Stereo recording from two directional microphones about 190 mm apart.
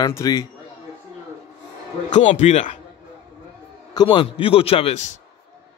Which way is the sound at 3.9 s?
25° left (ahead or behind).